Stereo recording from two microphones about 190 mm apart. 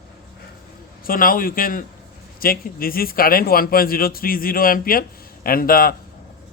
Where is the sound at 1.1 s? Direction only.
50° left (ahead or behind).